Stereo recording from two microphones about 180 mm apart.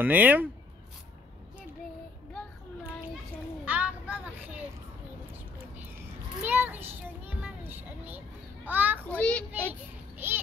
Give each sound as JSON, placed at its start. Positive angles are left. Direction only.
{"t": 0.0, "sound": "speech", "side_deg": -10}
{"t": 3.6, "sound": "child singing", "side_deg": -10}
{"t": 6.4, "sound": "a sound", "side_deg": -10}
{"t": 8.6, "sound": "speech", "side_deg": -10}
{"t": 9.0, "sound": "a child's voice", "side_deg": 5}
{"t": 9.7, "sound": "children playing", "side_deg": -10}